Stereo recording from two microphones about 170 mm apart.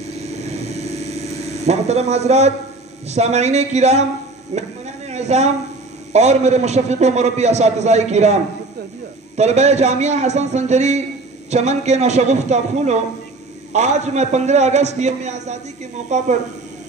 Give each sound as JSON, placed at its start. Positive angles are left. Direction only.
{"t": 1.7, "sound": "a man's voice", "side_deg": -40}
{"t": 4.6, "sound": "a sound", "side_deg": -40}
{"t": 6.1, "sound": "a man's voice", "side_deg": -40}
{"t": 9.4, "sound": "a man's voice", "side_deg": -40}